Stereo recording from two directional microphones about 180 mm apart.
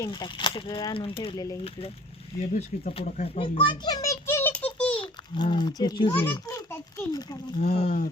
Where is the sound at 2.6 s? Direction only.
40° left (ahead or behind); by 4.9 s 5° left (ahead or behind).